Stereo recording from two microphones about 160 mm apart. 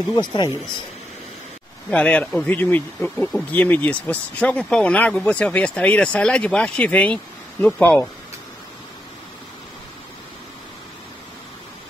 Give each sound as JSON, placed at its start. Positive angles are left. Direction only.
{"t": 0.1, "sound": "speech", "side_deg": 25}
{"t": 1.9, "sound": "speech", "side_deg": 5}